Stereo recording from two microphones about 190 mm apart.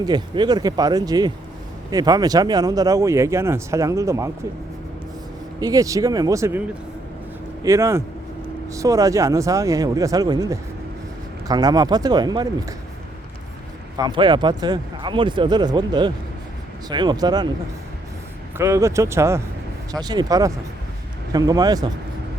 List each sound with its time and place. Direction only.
0.0 s speech: 20° right (ahead or behind)
5.5 s speech: 20° right (ahead or behind)
7.6 s speech: 15° right (ahead or behind)
13.9 s speech: 20° right (ahead or behind)
18.5 s speech: 15° right (ahead or behind)